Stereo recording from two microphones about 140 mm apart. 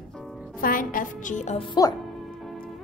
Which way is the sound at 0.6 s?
80° left.